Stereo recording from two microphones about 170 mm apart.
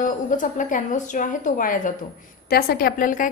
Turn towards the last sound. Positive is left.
turn(degrees=55)  # may be behind; listen again after turning